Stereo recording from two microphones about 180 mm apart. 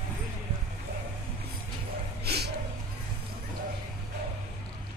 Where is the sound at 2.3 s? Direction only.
65° right (ahead or behind).